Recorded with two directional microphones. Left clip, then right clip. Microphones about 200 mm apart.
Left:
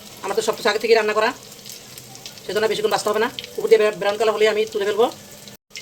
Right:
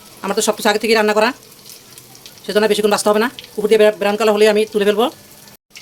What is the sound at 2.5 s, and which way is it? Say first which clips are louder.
Speech: right 5 dB; 55° right (ahead or behind).